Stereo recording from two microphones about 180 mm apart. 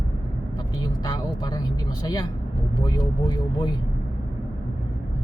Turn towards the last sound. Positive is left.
turn(degrees=20)  # may be behind; listen again after turning